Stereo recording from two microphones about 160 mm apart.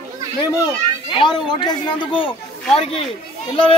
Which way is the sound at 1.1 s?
30° left (ahead or behind).